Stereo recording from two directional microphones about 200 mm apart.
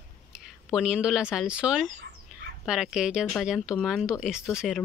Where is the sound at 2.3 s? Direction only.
5° right (ahead or behind).